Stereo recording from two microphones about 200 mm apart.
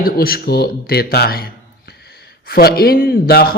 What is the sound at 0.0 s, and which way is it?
A man's voice, 50° left (ahead or behind).